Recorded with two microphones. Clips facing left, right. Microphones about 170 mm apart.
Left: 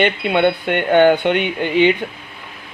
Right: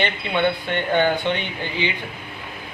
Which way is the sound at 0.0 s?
60° left (ahead or behind).